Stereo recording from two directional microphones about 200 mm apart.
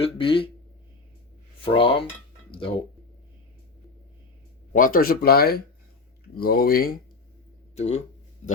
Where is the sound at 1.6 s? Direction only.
25° left (ahead or behind).